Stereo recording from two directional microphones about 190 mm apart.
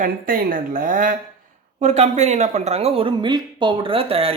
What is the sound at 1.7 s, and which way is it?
Speech, 35° right (ahead or behind).